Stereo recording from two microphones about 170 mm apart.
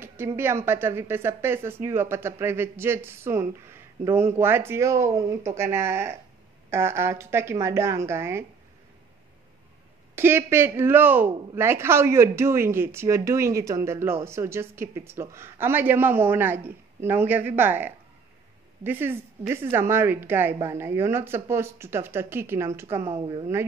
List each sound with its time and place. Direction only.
0.0 s a woman's voice: 15° right (ahead or behind)
10.1 s a woman's voice: 15° right (ahead or behind)